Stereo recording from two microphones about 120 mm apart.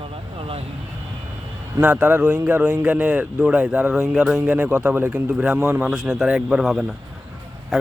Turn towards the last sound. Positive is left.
turn(degrees=0)  # may be behind; listen again after turning